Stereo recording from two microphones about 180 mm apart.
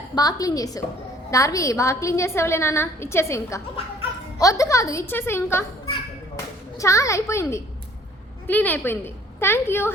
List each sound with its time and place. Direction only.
0.2 s a woman's voice: 20° left (ahead or behind)
6.7 s a woman's voice: 15° left (ahead or behind)